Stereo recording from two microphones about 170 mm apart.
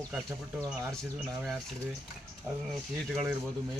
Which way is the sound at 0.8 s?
15° right (ahead or behind).